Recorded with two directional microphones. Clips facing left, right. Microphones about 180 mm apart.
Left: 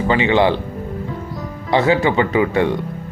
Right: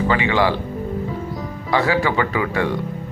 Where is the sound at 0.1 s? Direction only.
25° left (ahead or behind).